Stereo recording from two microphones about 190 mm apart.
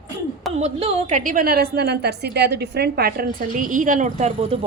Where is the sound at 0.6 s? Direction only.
35° right (ahead or behind).